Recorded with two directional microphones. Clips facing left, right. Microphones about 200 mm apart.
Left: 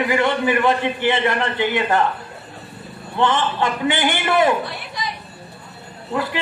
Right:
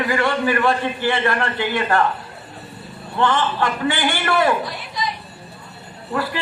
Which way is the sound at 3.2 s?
20° left (ahead or behind).